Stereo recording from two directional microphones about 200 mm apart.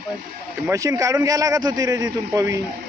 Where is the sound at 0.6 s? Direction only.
15° right (ahead or behind).